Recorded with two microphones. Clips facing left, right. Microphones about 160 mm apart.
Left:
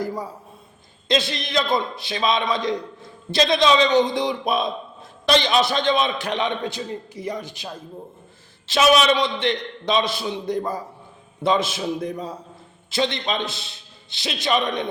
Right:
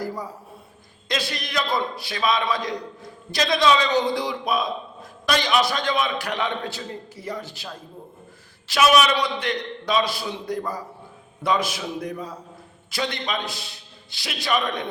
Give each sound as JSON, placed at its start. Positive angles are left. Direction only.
{"t": 1.0, "sound": "a man's voice", "side_deg": 25}